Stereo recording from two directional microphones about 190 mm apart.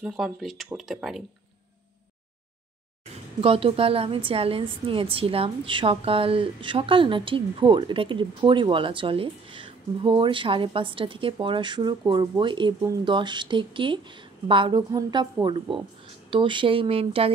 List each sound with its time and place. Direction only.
0.0 s speech: centre (ahead or behind)
3.3 s a woman's voice: 30° right (ahead or behind)